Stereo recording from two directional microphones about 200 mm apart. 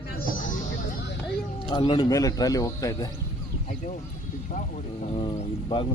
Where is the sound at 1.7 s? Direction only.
25° left (ahead or behind).